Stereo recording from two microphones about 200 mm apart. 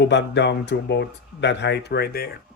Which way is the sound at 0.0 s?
60° left (ahead or behind).